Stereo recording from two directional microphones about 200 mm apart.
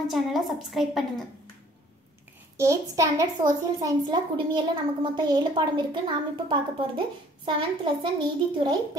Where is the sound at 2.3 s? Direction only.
15° right (ahead or behind).